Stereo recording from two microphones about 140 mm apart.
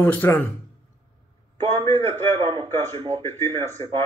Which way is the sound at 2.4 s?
40° right (ahead or behind).